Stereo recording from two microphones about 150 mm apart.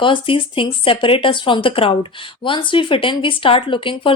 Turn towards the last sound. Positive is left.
turn(degrees=35)  # may be behind; listen again after turning